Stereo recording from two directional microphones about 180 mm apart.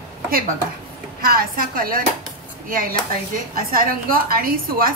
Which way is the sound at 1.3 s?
55° right (ahead or behind).